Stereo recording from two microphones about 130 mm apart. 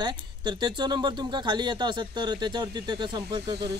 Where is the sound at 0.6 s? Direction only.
35° right (ahead or behind).